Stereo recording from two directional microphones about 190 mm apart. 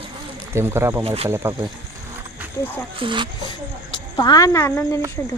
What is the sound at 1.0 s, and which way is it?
Speech, 35° right (ahead or behind).